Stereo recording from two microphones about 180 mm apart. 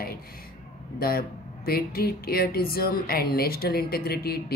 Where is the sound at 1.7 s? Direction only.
60° left (ahead or behind).